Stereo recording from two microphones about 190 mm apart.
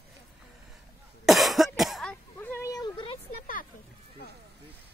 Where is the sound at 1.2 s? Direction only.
Centre (ahead or behind); by 3.2 s 25° left (ahead or behind).